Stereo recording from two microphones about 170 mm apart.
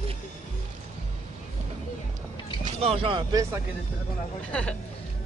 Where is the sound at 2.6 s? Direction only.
35° right (ahead or behind).